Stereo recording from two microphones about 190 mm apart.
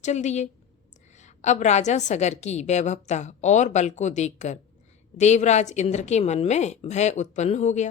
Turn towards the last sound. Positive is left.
turn(degrees=40)  # may be behind; listen again after turning